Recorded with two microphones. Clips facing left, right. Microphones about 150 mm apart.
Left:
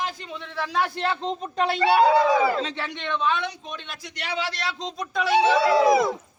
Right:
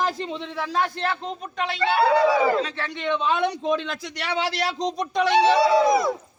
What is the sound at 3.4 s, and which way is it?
Speech, 75° right (ahead or behind).